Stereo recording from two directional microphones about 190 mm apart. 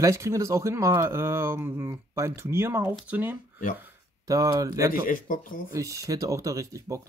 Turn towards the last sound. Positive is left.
turn(degrees=-15)  # may be behind; listen again after turning